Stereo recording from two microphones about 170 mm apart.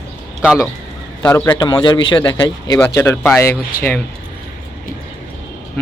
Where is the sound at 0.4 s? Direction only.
5° right (ahead or behind).